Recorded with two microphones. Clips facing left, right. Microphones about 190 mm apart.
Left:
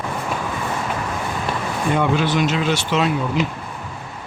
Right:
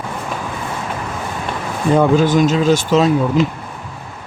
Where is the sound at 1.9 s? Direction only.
40° right (ahead or behind).